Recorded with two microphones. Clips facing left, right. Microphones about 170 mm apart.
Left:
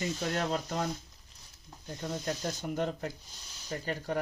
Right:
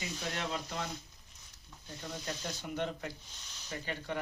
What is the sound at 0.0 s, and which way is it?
Speech, 45° left (ahead or behind).